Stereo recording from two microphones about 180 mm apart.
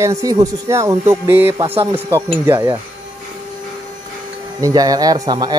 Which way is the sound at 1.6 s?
30° right (ahead or behind).